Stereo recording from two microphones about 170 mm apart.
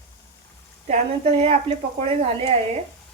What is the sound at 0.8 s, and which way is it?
A woman's voice, 40° right (ahead or behind).